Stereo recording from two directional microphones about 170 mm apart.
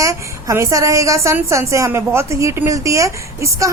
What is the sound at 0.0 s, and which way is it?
A woman's voice, 20° right (ahead or behind).